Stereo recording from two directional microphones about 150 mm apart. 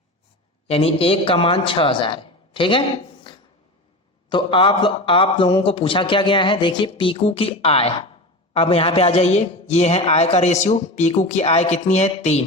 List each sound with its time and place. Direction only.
0.7 s a man's voice: 40° left (ahead or behind)
4.3 s a man's voice: 35° left (ahead or behind)